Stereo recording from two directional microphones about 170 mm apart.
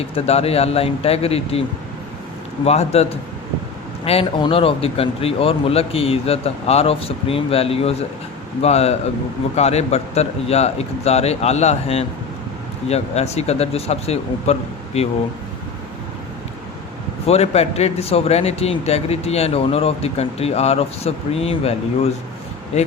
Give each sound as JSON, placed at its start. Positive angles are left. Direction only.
{"t": 0.0, "sound": "speech", "side_deg": 35}
{"t": 2.6, "sound": "speech", "side_deg": 40}
{"t": 17.2, "sound": "speech", "side_deg": 40}